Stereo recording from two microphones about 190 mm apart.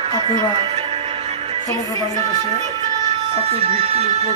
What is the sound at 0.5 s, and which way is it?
Music, 35° right (ahead or behind).